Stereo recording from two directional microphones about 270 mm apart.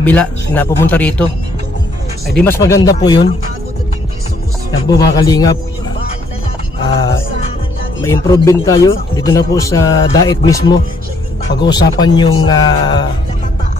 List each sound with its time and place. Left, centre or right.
0.0 s a man's voice: centre
2.3 s a man's voice: centre
4.6 s a man's voice: centre
8.0 s a man's voice: centre